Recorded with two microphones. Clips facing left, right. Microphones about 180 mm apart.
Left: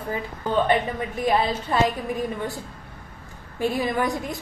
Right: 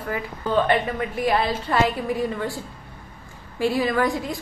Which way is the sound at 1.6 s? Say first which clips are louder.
Right 1 dB; 20° left (ahead or behind).